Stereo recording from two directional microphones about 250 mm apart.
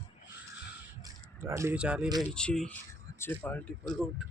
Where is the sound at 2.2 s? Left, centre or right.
Centre.